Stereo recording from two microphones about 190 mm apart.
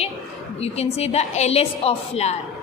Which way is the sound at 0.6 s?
35° left (ahead or behind).